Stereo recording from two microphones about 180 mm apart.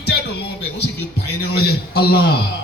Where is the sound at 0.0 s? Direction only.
65° left (ahead or behind).